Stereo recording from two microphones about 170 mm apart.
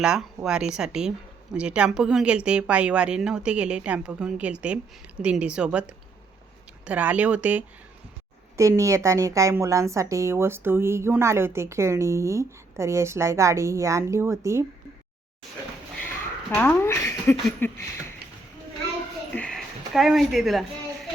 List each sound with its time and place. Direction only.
0.0 s a woman's voice: 5° right (ahead or behind)
16.6 s speech: 15° left (ahead or behind)
19.3 s a sound: 5° left (ahead or behind)